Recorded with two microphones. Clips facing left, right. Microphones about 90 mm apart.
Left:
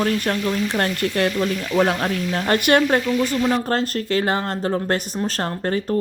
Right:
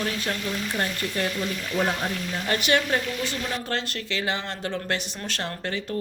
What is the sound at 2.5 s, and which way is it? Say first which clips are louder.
Speech: left 7 dB; 50° left (ahead or behind).